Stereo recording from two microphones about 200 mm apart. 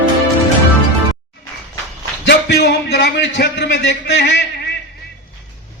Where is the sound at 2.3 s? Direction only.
55° left (ahead or behind).